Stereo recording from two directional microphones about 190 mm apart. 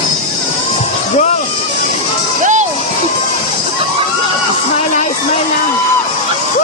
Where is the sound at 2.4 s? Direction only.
40° right (ahead or behind).